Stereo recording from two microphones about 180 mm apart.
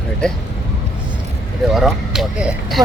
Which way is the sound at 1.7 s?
Centre (ahead or behind).